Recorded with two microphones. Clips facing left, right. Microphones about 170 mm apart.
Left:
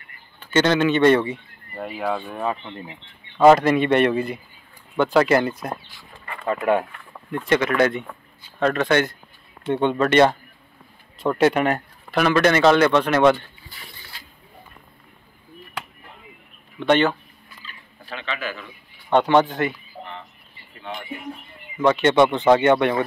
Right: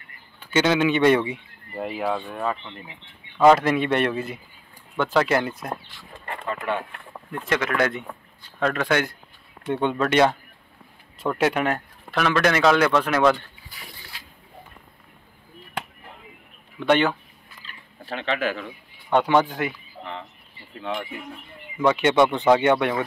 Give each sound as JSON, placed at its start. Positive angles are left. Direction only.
{"t": 0.4, "sound": "speech", "side_deg": -10}
{"t": 3.5, "sound": "a man's voice", "side_deg": 0}
{"t": 6.4, "sound": "speech", "side_deg": 40}
{"t": 7.2, "sound": "a man's voice", "side_deg": 0}
{"t": 16.8, "sound": "speech", "side_deg": -10}
{"t": 18.1, "sound": "speech", "side_deg": -65}
{"t": 19.1, "sound": "speech", "side_deg": -5}
{"t": 21.8, "sound": "a man's voice", "side_deg": -10}